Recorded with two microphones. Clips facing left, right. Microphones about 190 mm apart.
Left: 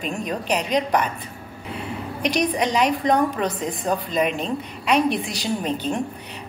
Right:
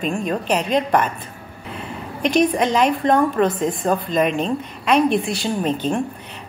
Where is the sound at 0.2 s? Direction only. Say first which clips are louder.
Right 3 dB; 50° right (ahead or behind).